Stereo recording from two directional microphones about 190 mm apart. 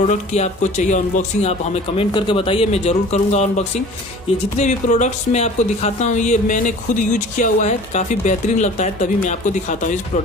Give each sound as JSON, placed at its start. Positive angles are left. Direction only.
{"t": 0.0, "sound": "speech", "side_deg": 40}